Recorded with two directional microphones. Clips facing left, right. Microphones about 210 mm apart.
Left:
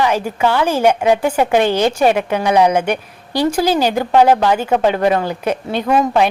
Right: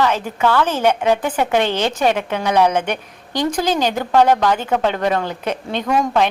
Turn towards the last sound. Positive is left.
turn(degrees=5)  # may be behind; listen again after turning